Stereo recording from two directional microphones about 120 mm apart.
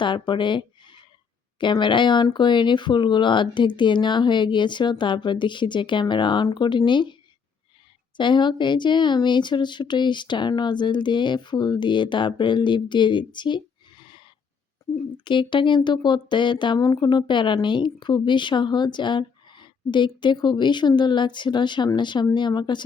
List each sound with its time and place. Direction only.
0.0 s speech: 40° left (ahead or behind)